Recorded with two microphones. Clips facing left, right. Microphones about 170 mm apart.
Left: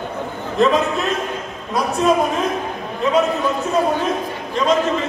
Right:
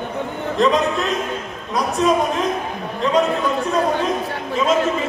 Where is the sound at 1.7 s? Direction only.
Centre (ahead or behind).